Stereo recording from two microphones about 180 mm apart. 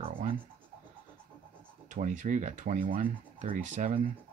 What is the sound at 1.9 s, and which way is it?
Speech, 45° right (ahead or behind).